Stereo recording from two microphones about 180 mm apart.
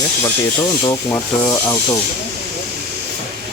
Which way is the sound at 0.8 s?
15° left (ahead or behind).